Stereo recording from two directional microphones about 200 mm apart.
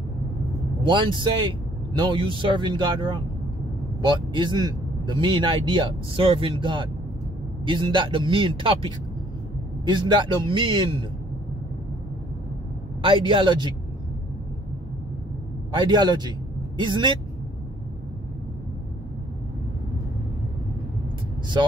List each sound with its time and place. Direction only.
0.8 s speech: 25° right (ahead or behind)
13.0 s speech: 25° right (ahead or behind)
15.7 s a man's voice: 20° right (ahead or behind)